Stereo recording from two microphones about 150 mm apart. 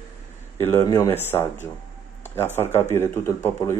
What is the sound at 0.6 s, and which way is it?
Speech, 15° left (ahead or behind).